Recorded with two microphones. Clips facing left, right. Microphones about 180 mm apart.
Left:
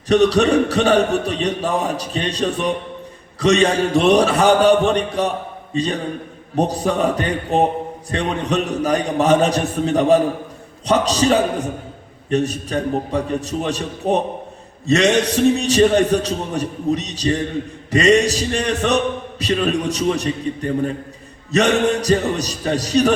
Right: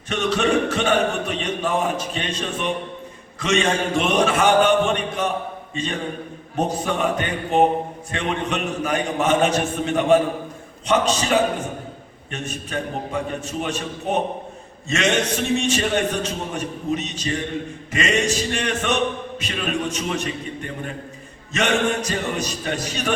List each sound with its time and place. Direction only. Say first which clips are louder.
0.1 s a man's voice: left 7 dB; 35° left (ahead or behind)